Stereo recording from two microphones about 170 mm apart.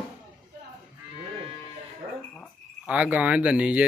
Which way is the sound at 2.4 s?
5° right (ahead or behind).